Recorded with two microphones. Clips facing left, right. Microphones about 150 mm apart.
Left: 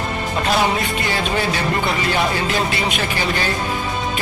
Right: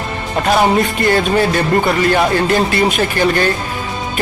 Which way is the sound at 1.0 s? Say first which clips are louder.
Right 9 dB; 50° right (ahead or behind).